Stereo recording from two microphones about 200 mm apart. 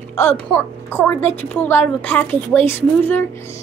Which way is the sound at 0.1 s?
10° left (ahead or behind).